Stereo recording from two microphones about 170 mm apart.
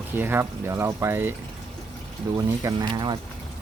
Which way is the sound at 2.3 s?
25° right (ahead or behind).